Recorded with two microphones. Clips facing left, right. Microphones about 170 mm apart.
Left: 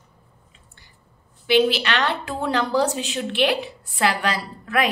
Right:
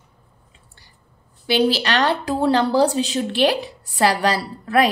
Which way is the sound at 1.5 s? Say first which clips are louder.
Even; 35° right (ahead or behind).